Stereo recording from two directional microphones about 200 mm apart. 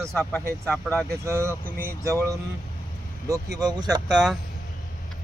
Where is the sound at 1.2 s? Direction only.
15° right (ahead or behind).